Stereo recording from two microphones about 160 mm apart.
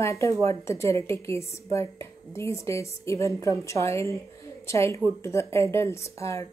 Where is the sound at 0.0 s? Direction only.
20° left (ahead or behind).